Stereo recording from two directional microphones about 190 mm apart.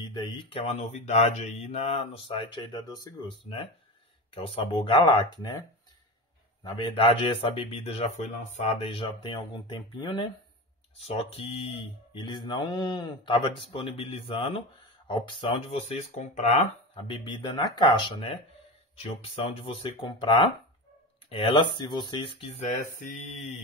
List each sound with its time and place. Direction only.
0.0 s speech: 20° left (ahead or behind)
6.6 s speech: 25° left (ahead or behind)